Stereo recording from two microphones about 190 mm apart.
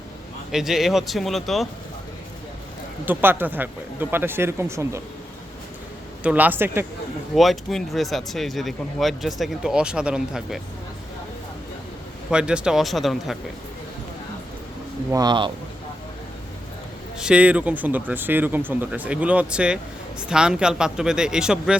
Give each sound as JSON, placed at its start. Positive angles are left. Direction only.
{"t": 0.5, "sound": "speech", "side_deg": 0}
{"t": 3.1, "sound": "speech", "side_deg": -10}
{"t": 6.2, "sound": "speech", "side_deg": -10}
{"t": 7.3, "sound": "speech", "side_deg": 0}
{"t": 12.3, "sound": "speech", "side_deg": -5}
{"t": 15.1, "sound": "speech", "side_deg": -20}
{"t": 17.2, "sound": "speech", "side_deg": -5}